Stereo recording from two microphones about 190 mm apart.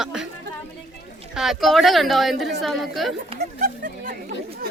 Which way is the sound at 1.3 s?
Centre (ahead or behind).